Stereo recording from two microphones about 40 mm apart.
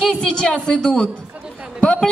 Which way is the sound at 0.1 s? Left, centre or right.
Left.